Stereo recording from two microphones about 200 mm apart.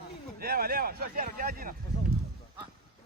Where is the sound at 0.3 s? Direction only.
50° right (ahead or behind).